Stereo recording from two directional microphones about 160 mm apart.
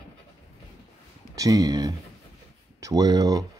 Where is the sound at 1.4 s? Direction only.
20° right (ahead or behind).